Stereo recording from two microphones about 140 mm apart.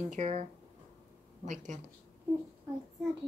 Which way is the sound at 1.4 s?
60° right (ahead or behind).